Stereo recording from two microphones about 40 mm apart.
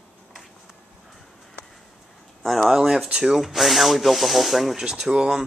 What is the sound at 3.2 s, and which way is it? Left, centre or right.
Rub, centre.